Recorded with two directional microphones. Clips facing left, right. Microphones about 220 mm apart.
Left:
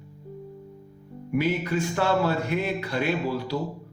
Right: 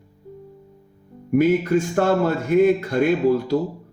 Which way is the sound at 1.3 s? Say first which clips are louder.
Right 8 dB; 45° right (ahead or behind).